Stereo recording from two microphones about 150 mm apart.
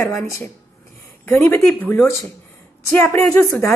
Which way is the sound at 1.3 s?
15° left (ahead or behind).